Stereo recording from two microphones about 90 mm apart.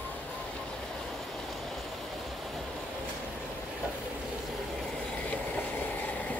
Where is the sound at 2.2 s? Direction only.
Centre (ahead or behind).